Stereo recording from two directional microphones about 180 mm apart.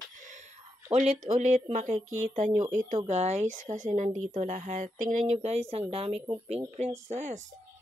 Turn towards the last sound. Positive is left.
turn(degrees=-40)  # may be behind; listen again after turning